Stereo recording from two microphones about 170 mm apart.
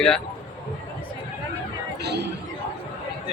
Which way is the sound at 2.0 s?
75° right (ahead or behind).